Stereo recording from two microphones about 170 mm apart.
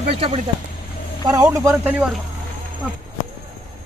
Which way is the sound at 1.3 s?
20° right (ahead or behind).